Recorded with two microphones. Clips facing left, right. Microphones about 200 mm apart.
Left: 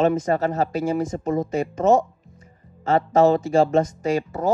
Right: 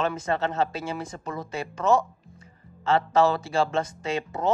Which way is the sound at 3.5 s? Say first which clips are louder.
Left 7 dB; 40° left (ahead or behind).